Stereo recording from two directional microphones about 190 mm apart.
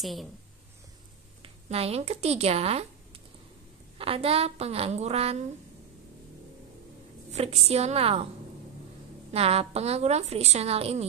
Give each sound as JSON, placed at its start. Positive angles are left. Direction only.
{"t": 0.0, "sound": "speech", "side_deg": 0}
{"t": 1.4, "sound": "speech", "side_deg": -30}
{"t": 4.0, "sound": "a woman's voice", "side_deg": -30}
{"t": 7.2, "sound": "a woman's voice", "side_deg": -35}
{"t": 9.3, "sound": "a woman's voice", "side_deg": -30}